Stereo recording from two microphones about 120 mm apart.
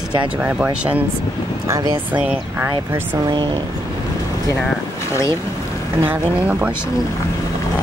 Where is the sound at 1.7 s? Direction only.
35° right (ahead or behind).